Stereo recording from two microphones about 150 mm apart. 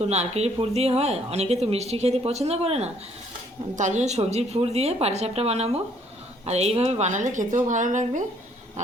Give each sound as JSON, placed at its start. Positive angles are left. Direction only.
{"t": 0.0, "sound": "a woman's voice", "side_deg": -45}